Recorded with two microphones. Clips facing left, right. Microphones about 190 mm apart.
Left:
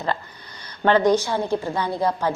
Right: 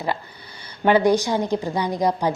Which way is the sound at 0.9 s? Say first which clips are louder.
Right 1 dB; 10° right (ahead or behind).